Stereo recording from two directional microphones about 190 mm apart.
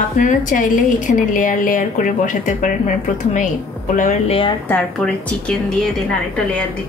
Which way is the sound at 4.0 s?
35° left (ahead or behind).